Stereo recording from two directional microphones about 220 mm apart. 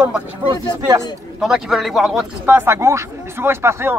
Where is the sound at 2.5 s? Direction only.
10° right (ahead or behind).